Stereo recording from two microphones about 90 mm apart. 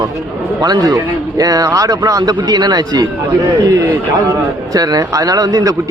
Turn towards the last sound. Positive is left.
turn(degrees=-40)  # may be behind; listen again after turning